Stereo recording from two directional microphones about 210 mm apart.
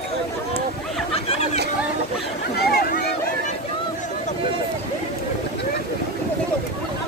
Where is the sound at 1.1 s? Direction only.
30° left (ahead or behind).